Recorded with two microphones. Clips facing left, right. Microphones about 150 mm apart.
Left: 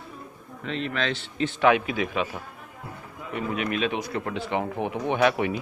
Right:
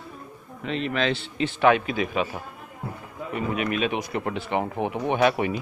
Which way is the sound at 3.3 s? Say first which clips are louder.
Right 1 dB; 5° right (ahead or behind).